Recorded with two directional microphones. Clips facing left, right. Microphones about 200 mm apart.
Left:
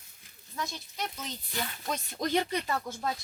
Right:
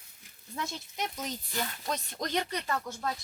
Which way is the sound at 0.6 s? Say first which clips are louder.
Even; 25° right (ahead or behind).